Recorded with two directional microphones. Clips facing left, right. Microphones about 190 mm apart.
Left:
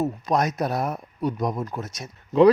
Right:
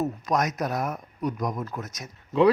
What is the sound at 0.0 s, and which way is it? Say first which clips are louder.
Speech: left 2 dB; 30° left (ahead or behind).